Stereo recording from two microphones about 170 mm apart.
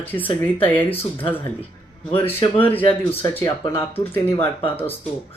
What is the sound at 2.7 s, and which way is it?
Speech, 35° left (ahead or behind).